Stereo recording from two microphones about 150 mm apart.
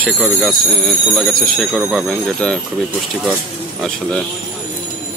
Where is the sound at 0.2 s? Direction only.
Centre (ahead or behind).